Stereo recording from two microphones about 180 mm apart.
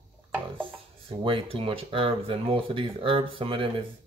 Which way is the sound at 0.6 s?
30° right (ahead or behind).